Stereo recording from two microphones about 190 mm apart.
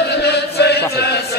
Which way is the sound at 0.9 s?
60° left (ahead or behind).